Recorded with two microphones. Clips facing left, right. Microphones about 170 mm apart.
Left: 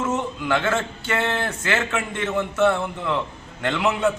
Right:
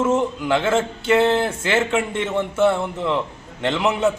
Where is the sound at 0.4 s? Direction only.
25° right (ahead or behind).